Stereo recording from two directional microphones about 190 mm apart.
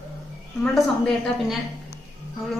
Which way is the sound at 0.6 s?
Centre (ahead or behind).